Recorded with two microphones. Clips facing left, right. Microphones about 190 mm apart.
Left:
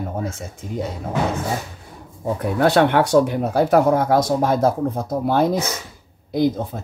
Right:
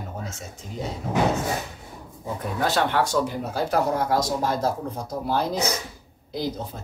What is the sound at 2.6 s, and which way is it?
Speech, 65° left (ahead or behind).